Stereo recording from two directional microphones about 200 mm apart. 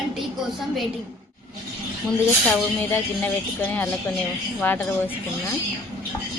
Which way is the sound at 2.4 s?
5° left (ahead or behind).